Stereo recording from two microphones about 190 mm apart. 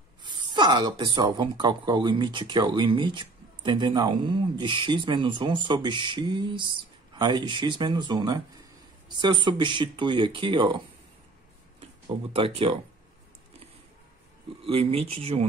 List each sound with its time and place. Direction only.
0.2 s speech: 25° right (ahead or behind)
11.8 s speech: 30° right (ahead or behind)
14.6 s speech: 30° right (ahead or behind)